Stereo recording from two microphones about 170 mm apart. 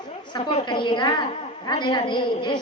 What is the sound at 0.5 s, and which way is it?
A woman's voice, 30° left (ahead or behind).